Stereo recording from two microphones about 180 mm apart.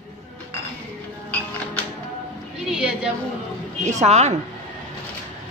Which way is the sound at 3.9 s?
40° right (ahead or behind).